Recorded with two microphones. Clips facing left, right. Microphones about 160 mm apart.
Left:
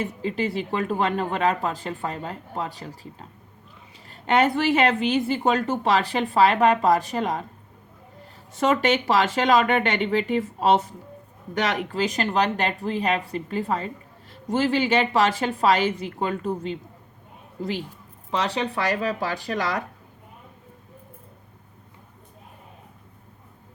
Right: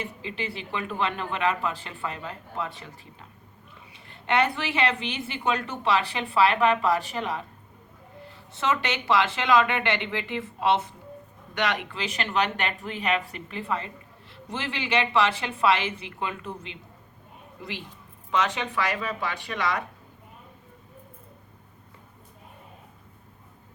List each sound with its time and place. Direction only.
0.0 s a woman's voice: 40° left (ahead or behind)
8.6 s a woman's voice: 50° left (ahead or behind)
18.3 s speech: 35° left (ahead or behind)